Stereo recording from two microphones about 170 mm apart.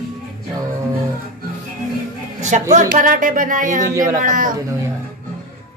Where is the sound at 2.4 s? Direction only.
45° right (ahead or behind).